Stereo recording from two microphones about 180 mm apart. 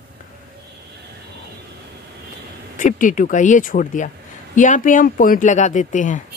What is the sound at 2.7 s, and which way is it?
A man's voice, 45° left (ahead or behind).